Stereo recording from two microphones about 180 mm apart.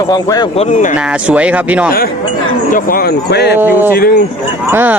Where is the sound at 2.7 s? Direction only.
50° left (ahead or behind); by 3.5 s 65° left (ahead or behind).